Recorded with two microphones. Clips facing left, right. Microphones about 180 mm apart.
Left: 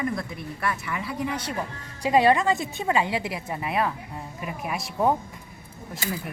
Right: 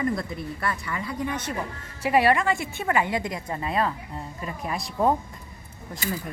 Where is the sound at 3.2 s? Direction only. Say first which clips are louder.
Even; 10° left (ahead or behind).